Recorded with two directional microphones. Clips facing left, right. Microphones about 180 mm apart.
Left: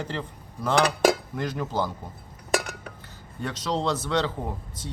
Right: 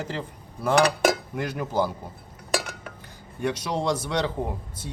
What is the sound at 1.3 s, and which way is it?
Speech, 10° right (ahead or behind).